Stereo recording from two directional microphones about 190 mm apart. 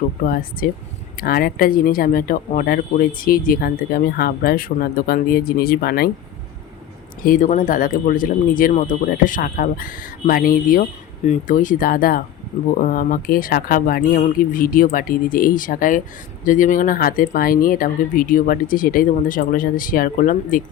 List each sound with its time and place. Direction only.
0.3 s speech: 50° left (ahead or behind)
7.2 s speech: 45° left (ahead or behind)